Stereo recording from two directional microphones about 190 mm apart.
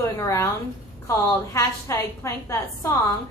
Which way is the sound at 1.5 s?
15° left (ahead or behind).